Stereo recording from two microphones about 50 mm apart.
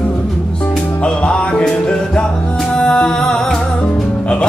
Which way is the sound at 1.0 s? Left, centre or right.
Left.